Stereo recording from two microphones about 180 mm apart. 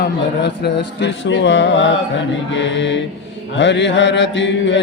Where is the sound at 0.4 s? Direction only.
70° left (ahead or behind).